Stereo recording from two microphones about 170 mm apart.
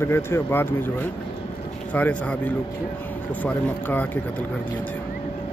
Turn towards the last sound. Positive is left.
turn(degrees=10)  # may be behind; listen again after turning